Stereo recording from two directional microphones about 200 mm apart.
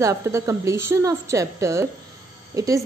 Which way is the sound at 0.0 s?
15° right (ahead or behind).